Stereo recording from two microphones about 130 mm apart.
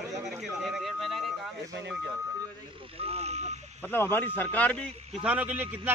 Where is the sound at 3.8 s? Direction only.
15° left (ahead or behind).